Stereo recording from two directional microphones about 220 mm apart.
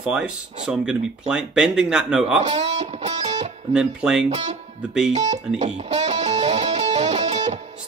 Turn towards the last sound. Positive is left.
turn(degrees=-30)  # may be behind; listen again after turning